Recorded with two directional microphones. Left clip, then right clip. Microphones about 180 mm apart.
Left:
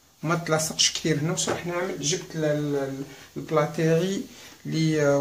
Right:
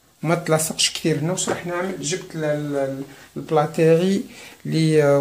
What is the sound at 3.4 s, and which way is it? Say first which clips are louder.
Speech: right 6 dB; 20° right (ahead or behind).